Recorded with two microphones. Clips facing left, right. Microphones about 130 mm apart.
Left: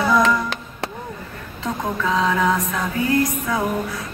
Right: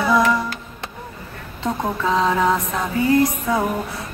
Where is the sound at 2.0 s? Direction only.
30° right (ahead or behind).